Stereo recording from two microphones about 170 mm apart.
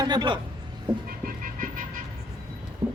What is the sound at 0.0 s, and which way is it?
Speech, 25° right (ahead or behind).